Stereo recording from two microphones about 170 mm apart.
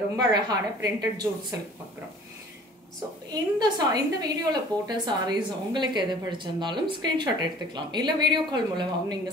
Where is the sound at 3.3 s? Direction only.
25° right (ahead or behind).